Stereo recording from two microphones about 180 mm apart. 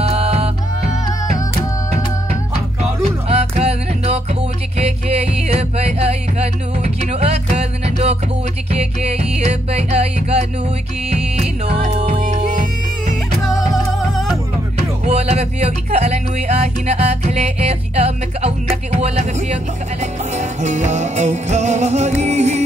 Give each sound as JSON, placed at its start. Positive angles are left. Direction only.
{"t": 0.0, "sound": "music", "side_deg": -35}
{"t": 3.3, "sound": "music", "side_deg": -35}
{"t": 13.4, "sound": "music", "side_deg": 20}
{"t": 13.9, "sound": "music", "side_deg": 0}
{"t": 15.0, "sound": "music", "side_deg": -35}
{"t": 18.9, "sound": "speech", "side_deg": -35}